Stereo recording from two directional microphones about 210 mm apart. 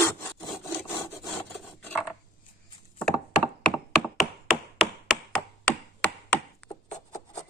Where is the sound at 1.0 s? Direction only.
15° left (ahead or behind).